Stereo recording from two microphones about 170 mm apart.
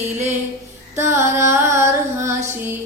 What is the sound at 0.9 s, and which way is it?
Female singing, 15° right (ahead or behind).